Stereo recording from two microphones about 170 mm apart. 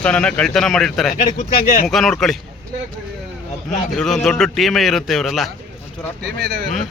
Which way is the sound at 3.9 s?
Centre (ahead or behind).